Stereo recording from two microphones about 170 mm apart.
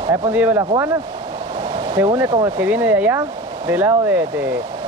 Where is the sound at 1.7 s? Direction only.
25° right (ahead or behind).